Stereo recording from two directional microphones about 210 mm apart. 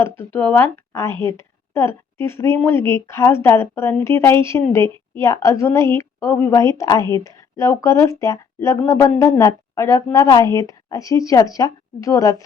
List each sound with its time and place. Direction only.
0.0 s a woman's voice: 10° left (ahead or behind)